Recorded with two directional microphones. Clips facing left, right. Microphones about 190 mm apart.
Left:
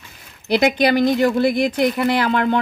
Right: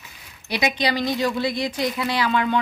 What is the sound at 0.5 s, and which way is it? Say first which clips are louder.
A woman's voice: left 7 dB; 60° left (ahead or behind).